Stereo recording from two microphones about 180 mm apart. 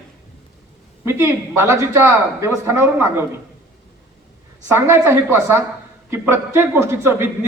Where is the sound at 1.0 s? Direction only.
15° right (ahead or behind).